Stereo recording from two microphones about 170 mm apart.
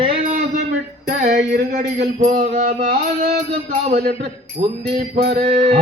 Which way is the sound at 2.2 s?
45° right (ahead or behind).